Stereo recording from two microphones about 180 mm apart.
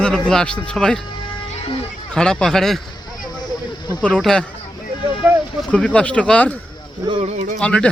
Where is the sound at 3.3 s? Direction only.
20° left (ahead or behind).